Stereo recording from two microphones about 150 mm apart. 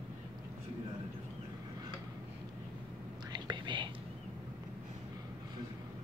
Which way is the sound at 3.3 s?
30° right (ahead or behind).